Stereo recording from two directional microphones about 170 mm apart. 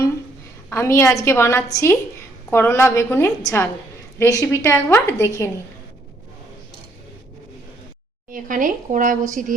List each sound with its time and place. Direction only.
0.7 s a woman's voice: 15° left (ahead or behind)
8.3 s speech: 50° right (ahead or behind)